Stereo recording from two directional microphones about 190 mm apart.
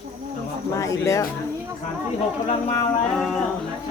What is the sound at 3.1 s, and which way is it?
Speech, centre (ahead or behind).